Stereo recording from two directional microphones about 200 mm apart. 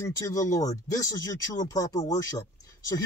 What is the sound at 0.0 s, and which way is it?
Speech, 15° left (ahead or behind).